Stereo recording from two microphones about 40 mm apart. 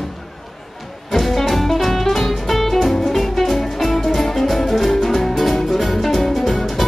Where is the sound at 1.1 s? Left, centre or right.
Centre.